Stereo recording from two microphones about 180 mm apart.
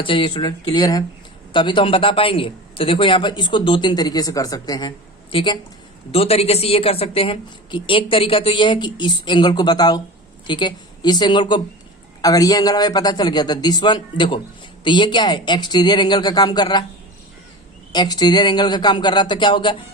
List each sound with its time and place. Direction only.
0.0 s a man's voice: 30° left (ahead or behind)
17.9 s a man's voice: 25° left (ahead or behind)